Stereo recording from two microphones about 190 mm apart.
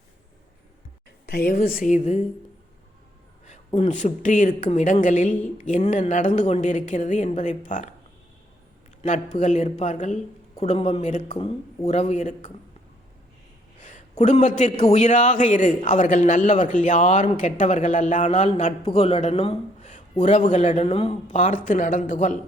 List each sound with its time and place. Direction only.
1.3 s a woman's voice: 50° left (ahead or behind)
3.8 s a man's voice: 40° left (ahead or behind)
9.0 s a man's voice: 40° left (ahead or behind)
13.8 s a man's voice: 40° left (ahead or behind)